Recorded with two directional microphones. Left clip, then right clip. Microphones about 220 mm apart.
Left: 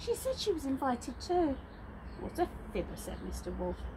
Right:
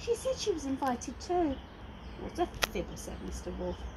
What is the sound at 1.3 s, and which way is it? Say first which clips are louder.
Speech: even; 5° left (ahead or behind).